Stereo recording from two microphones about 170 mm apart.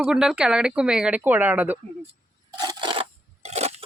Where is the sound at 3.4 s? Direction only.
40° right (ahead or behind).